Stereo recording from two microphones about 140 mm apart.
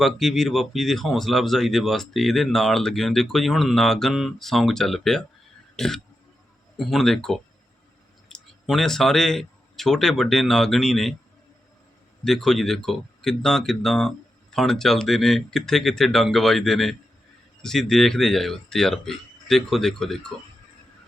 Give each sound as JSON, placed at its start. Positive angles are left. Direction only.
{"t": 0.0, "sound": "speech", "side_deg": 0}
{"t": 5.7, "sound": "a sound", "side_deg": 5}
{"t": 6.7, "sound": "speech", "side_deg": 0}
{"t": 12.2, "sound": "speech", "side_deg": 0}